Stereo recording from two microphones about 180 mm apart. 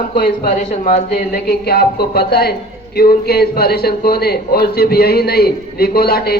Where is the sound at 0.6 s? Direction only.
50° left (ahead or behind).